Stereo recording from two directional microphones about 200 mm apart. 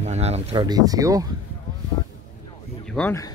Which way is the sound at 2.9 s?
5° left (ahead or behind).